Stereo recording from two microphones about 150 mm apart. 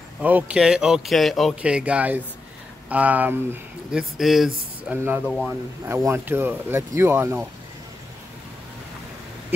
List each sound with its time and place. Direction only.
0.2 s speech: 10° right (ahead or behind)
5.9 s speech: 15° right (ahead or behind)